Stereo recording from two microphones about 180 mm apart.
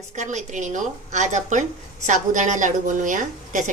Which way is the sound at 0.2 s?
40° right (ahead or behind).